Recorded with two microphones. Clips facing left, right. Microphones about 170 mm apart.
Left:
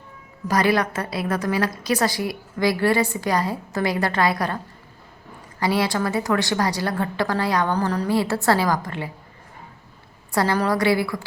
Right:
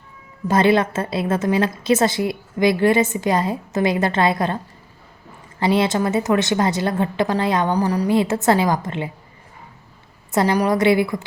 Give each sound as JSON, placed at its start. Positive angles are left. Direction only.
{"t": 0.4, "sound": "a woman's voice", "side_deg": -25}
{"t": 10.3, "sound": "a woman's voice", "side_deg": -15}